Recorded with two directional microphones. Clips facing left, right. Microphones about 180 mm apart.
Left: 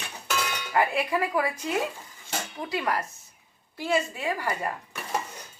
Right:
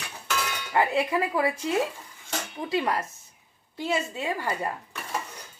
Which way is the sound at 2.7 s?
25° right (ahead or behind).